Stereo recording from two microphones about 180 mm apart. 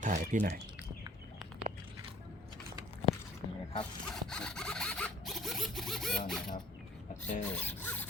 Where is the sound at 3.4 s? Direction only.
30° left (ahead or behind).